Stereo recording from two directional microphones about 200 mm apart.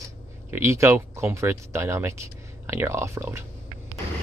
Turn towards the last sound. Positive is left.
turn(degrees=-15)  # may be behind; listen again after turning